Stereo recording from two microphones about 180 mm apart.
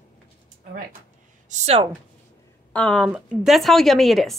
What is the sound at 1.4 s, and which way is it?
Speech, 40° right (ahead or behind).